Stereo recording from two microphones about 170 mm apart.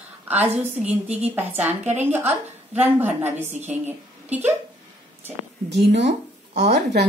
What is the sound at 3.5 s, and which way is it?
Speech, 40° right (ahead or behind).